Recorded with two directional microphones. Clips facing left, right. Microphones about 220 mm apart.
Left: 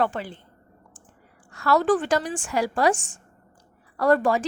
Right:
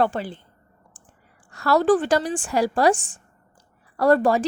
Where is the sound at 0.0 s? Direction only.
35° right (ahead or behind).